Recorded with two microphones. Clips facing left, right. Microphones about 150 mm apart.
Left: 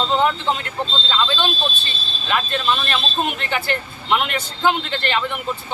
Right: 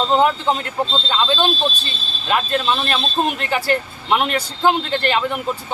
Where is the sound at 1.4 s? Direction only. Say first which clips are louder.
Right 4 dB; 40° right (ahead or behind).